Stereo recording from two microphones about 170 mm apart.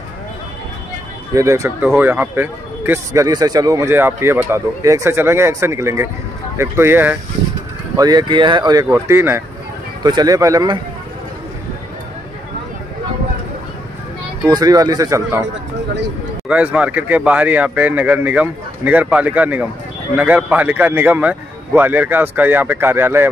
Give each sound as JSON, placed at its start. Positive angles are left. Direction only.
{"t": 1.3, "sound": "speech", "side_deg": -20}
{"t": 14.4, "sound": "speech", "side_deg": -20}
{"t": 16.4, "sound": "speech", "side_deg": -5}